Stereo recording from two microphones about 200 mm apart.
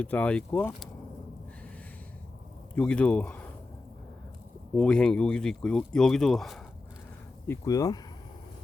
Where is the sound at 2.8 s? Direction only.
5° left (ahead or behind).